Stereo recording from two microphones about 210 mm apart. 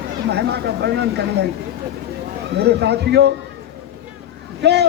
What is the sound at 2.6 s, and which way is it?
Speech, 50° right (ahead or behind).